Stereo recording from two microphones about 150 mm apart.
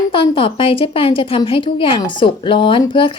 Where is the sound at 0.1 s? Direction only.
35° left (ahead or behind).